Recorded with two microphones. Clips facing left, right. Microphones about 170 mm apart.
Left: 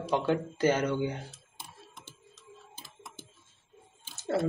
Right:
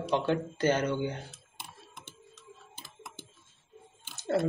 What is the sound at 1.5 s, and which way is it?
Typing, 60° right (ahead or behind).